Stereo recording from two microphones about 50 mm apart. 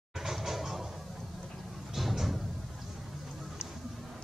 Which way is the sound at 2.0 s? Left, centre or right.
Centre.